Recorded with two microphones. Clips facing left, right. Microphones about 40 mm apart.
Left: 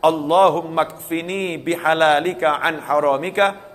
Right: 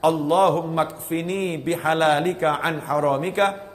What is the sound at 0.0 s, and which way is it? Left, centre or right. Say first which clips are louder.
A man's voice: left 4 dB; left.